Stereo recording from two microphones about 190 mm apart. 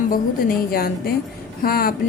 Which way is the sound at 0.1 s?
50° left (ahead or behind).